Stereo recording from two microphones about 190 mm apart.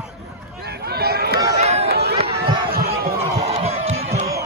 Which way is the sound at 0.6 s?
60° right (ahead or behind).